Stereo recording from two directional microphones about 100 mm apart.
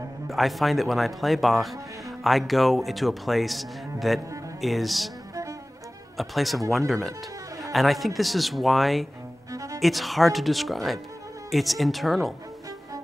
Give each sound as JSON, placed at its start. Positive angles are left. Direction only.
{"t": 0.3, "sound": "speech", "side_deg": 0}
{"t": 5.3, "sound": "music", "side_deg": -30}
{"t": 6.1, "sound": "speech", "side_deg": 0}
{"t": 9.5, "sound": "music", "side_deg": -35}
{"t": 9.8, "sound": "speech", "side_deg": 0}